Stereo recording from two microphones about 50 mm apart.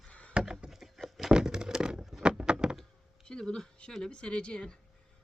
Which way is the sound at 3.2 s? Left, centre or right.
Centre.